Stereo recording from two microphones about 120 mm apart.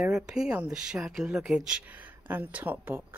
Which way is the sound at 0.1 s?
5° right (ahead or behind).